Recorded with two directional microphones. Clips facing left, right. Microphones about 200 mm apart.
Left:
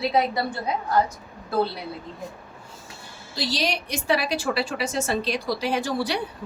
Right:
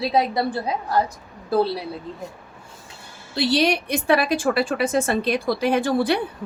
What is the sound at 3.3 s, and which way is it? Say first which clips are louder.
A woman's voice: right 7 dB; 60° right (ahead or behind).